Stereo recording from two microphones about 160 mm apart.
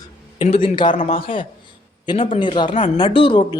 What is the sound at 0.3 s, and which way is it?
Speech, 35° left (ahead or behind).